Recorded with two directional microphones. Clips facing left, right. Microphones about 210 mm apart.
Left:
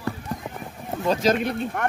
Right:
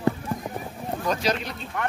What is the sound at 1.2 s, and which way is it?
Speech, 55° left (ahead or behind).